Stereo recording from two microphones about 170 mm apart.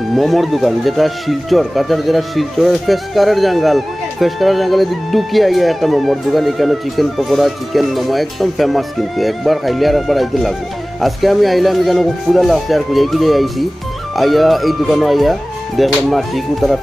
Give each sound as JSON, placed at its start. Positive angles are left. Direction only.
{"t": 0.1, "sound": "speech", "side_deg": 0}